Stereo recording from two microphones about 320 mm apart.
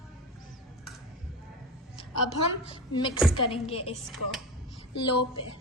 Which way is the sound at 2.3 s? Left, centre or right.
Centre.